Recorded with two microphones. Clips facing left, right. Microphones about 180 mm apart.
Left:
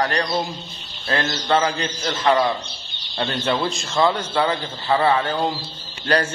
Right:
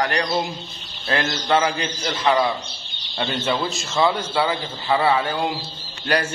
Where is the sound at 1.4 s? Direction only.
10° right (ahead or behind).